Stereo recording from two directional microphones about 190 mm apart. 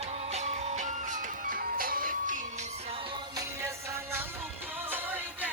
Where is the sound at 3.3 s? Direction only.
15° right (ahead or behind).